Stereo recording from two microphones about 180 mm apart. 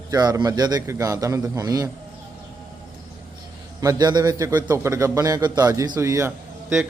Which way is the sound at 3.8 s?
20° right (ahead or behind).